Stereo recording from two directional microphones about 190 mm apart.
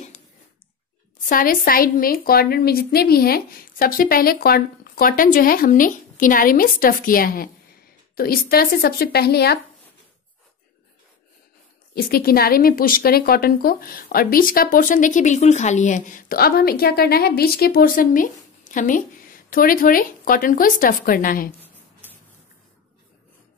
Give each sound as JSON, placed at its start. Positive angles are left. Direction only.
{"t": 1.3, "sound": "speech", "side_deg": 50}
{"t": 11.9, "sound": "speech", "side_deg": 50}